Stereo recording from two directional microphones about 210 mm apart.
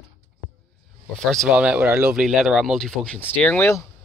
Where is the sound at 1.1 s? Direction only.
Centre (ahead or behind).